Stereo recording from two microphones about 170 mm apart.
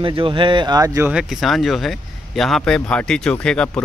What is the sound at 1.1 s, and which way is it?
Speech, 5° right (ahead or behind).